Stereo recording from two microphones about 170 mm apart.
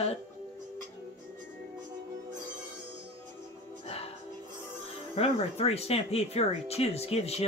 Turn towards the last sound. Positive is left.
turn(degrees=35)  # may be behind; listen again after turning